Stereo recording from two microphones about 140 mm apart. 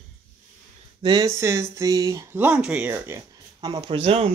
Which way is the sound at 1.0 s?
30° right (ahead or behind).